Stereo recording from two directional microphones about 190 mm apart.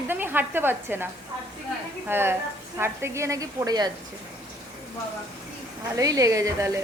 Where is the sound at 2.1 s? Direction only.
10° right (ahead or behind).